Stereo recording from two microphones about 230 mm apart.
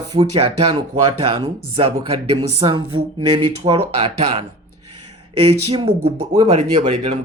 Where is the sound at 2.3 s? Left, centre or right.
Right.